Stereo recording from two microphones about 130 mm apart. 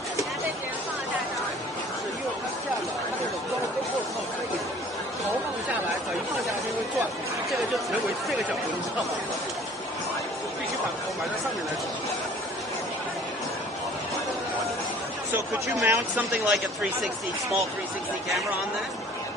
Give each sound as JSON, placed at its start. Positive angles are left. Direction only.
{"t": 15.8, "sound": "speech", "side_deg": -15}
{"t": 16.5, "sound": "speech", "side_deg": 0}